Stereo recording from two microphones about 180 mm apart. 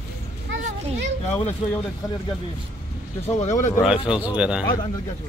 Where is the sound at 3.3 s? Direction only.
40° left (ahead or behind).